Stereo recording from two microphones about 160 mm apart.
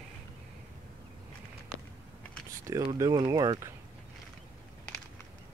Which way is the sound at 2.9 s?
20° right (ahead or behind).